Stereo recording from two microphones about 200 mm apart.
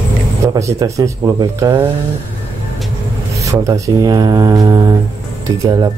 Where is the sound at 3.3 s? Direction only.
15° right (ahead or behind).